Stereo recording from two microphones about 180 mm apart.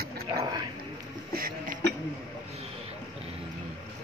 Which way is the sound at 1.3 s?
50° right (ahead or behind).